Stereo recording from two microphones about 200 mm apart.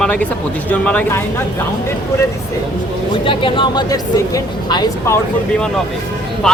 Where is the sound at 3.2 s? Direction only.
25° left (ahead or behind).